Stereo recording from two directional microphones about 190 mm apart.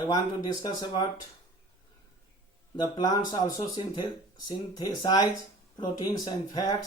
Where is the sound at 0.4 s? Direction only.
20° left (ahead or behind).